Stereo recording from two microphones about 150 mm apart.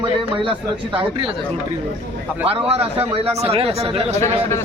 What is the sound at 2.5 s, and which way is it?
A man's voice, 40° right (ahead or behind).